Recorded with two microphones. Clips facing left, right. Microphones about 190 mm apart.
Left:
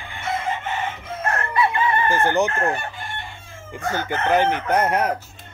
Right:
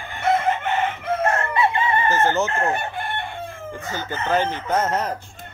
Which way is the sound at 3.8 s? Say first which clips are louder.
Left 6 dB; 60° left (ahead or behind).